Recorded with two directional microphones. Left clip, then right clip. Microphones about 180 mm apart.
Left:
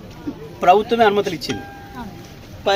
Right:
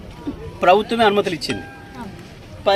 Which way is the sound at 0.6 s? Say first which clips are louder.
Left 1 dB; 10° right (ahead or behind).